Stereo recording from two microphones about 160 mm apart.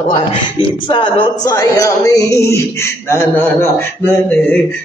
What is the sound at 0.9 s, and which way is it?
Speech, 30° left (ahead or behind).